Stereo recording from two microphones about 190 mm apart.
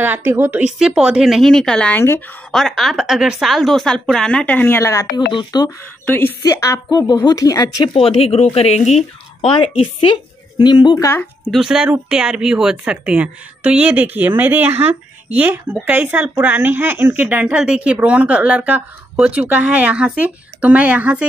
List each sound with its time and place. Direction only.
0.0 s a woman's voice: 10° right (ahead or behind); by 5.7 s 20° left (ahead or behind)
6.0 s a woman's voice: 10° left (ahead or behind)
7.9 s a woman's voice: 30° left (ahead or behind); by 21.3 s 5° right (ahead or behind)